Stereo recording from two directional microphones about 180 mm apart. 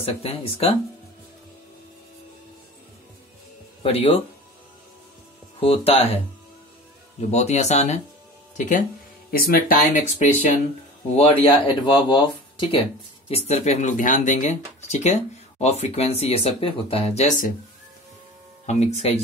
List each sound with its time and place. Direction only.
0.0 s speech: 35° left (ahead or behind)
3.8 s speech: 30° left (ahead or behind)
5.6 s speech: 30° left (ahead or behind)
7.2 s speech: 40° left (ahead or behind)
11.1 s speech: 30° left (ahead or behind)
18.7 s speech: 40° left (ahead or behind)